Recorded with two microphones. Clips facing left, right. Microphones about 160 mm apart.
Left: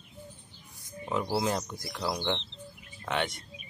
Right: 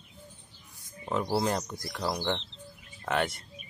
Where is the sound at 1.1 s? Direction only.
Centre (ahead or behind).